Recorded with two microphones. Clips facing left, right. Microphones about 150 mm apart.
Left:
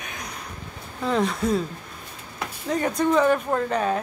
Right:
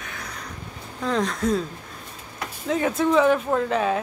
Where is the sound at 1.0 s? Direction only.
5° left (ahead or behind).